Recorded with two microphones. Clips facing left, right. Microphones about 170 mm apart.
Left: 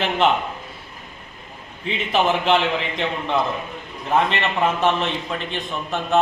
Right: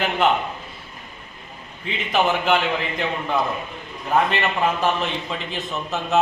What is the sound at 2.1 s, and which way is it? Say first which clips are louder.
Speech: left 1 dB; centre (ahead or behind).